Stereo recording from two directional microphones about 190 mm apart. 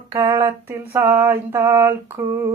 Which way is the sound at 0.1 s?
15° right (ahead or behind).